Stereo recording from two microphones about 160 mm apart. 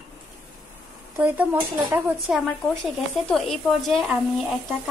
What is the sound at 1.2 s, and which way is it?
Speech, 10° right (ahead or behind).